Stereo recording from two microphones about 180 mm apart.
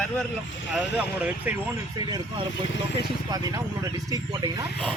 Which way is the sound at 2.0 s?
25° right (ahead or behind).